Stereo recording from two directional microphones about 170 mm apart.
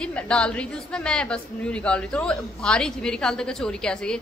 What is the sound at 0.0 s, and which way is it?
A woman's voice, 5° left (ahead or behind).